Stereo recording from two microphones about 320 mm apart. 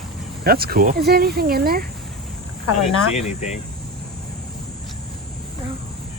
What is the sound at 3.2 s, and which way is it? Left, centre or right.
Speech, left.